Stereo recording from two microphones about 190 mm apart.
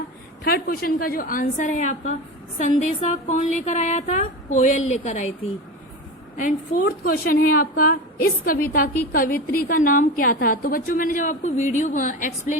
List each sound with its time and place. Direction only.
0.4 s a woman's voice: 55° left (ahead or behind)
6.3 s a woman's voice: 45° left (ahead or behind)